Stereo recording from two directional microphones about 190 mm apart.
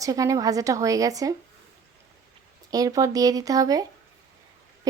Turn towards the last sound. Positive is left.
turn(degrees=-20)  # may be behind; listen again after turning